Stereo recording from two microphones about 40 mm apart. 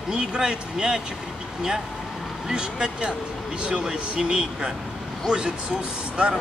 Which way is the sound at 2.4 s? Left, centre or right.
Right.